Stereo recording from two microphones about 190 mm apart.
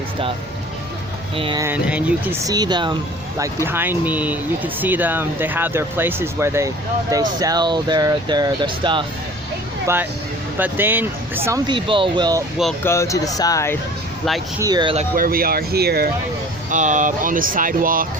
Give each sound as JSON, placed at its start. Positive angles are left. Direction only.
{"t": 1.4, "sound": "speech", "side_deg": -25}
{"t": 1.6, "sound": "speech", "side_deg": -10}
{"t": 9.8, "sound": "speech", "side_deg": -10}
{"t": 12.8, "sound": "speech", "side_deg": 15}
{"t": 14.6, "sound": "speech", "side_deg": -20}
{"t": 15.1, "sound": "speech", "side_deg": -50}
{"t": 16.6, "sound": "speech", "side_deg": -40}